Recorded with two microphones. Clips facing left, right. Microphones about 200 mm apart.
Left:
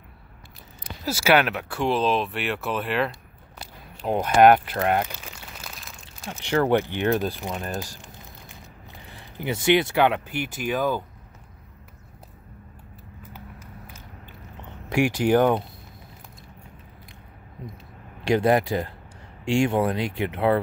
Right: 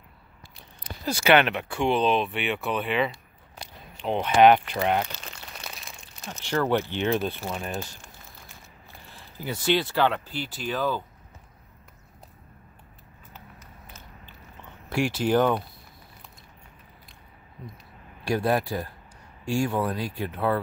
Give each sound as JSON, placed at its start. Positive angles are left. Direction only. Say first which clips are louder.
{"t": 1.0, "sound": "speech", "louder": "even", "side_deg": 5}
{"t": 3.6, "sound": "a sound", "louder": "left 2 dB", "side_deg": 5}
{"t": 6.2, "sound": "speech", "louder": "left 4 dB", "side_deg": 15}
{"t": 9.0, "sound": "speech", "louder": "left 4 dB", "side_deg": 20}
{"t": 14.9, "sound": "speech", "louder": "left 4 dB", "side_deg": 15}
{"t": 18.2, "sound": "speech", "louder": "left 5 dB", "side_deg": 20}
{"t": 19.4, "sound": "speech", "louder": "left 4 dB", "side_deg": 80}